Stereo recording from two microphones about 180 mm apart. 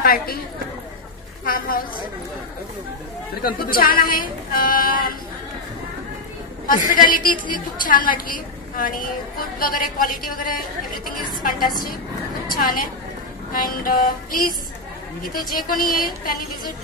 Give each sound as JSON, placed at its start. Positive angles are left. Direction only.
{"t": 0.0, "sound": "a woman's voice", "side_deg": 55}
{"t": 1.4, "sound": "a woman's voice", "side_deg": 50}
{"t": 3.4, "sound": "a woman's voice", "side_deg": 55}
{"t": 7.0, "sound": "a woman's voice", "side_deg": 50}
{"t": 12.4, "sound": "a woman's voice", "side_deg": 50}